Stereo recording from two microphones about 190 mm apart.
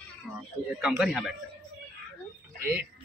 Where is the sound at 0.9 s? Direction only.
5° right (ahead or behind).